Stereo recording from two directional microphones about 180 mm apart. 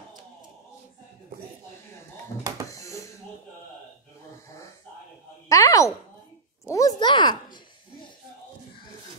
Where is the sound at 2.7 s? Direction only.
15° left (ahead or behind).